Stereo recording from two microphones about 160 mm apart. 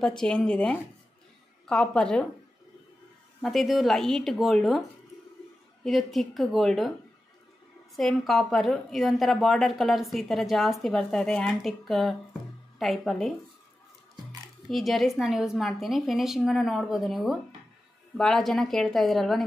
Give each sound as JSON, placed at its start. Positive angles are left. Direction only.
{"t": 0.0, "sound": "a woman's voice", "side_deg": 5}
{"t": 3.3, "sound": "a woman's voice", "side_deg": 0}
{"t": 5.9, "sound": "a woman's voice", "side_deg": 0}
{"t": 7.9, "sound": "a woman's voice", "side_deg": 0}
{"t": 14.7, "sound": "a woman's voice", "side_deg": 0}